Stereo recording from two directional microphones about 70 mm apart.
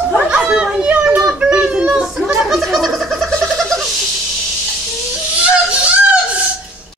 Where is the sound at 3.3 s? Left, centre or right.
Centre.